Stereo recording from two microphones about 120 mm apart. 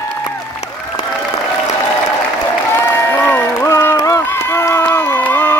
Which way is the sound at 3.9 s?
25° left (ahead or behind).